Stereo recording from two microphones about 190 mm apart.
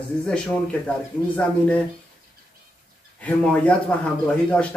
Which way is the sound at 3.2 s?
5° left (ahead or behind).